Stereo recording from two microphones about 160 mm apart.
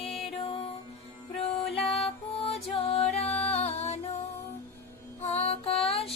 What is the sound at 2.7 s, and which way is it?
Music, 40° left (ahead or behind).